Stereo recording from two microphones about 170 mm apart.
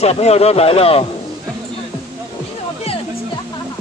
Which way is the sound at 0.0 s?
40° left (ahead or behind).